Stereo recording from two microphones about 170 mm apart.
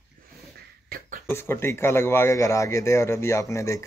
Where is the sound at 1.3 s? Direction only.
15° left (ahead or behind).